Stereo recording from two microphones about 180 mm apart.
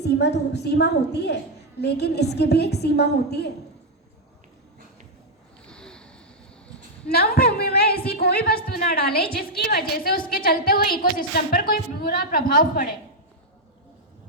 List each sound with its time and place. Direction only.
0.0 s a woman's voice: 70° left (ahead or behind)
5.6 s a sound: 5° left (ahead or behind)
7.1 s a woman's voice: 60° left (ahead or behind)